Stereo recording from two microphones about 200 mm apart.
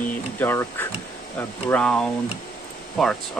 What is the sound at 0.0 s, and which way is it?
Speech, 10° left (ahead or behind).